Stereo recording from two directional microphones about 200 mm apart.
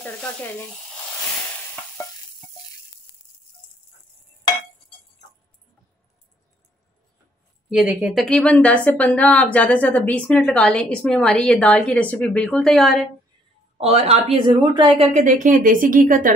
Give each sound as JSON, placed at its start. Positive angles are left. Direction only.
{"t": 0.0, "sound": "speech", "side_deg": 10}
{"t": 7.7, "sound": "a woman's voice", "side_deg": -5}
{"t": 13.7, "sound": "a woman's voice", "side_deg": -30}